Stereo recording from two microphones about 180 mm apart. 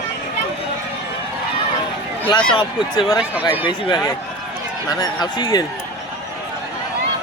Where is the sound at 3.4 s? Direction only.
25° left (ahead or behind).